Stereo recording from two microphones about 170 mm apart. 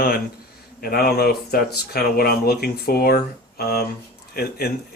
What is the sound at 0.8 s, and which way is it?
Speech, 60° left (ahead or behind).